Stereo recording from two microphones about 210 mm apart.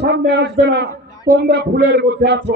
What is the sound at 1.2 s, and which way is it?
Speech, 40° right (ahead or behind).